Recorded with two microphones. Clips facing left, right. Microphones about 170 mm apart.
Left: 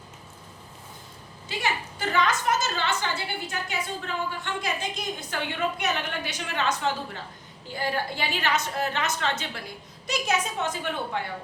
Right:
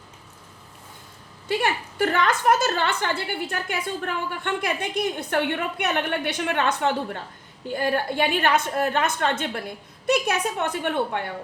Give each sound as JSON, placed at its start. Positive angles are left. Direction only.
{"t": 1.5, "sound": "a woman's voice", "side_deg": -60}